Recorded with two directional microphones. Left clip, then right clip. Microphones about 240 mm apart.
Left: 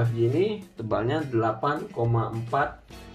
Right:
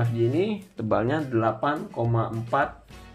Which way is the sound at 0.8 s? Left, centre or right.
Right.